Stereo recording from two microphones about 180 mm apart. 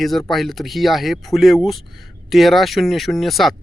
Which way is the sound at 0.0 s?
Centre (ahead or behind).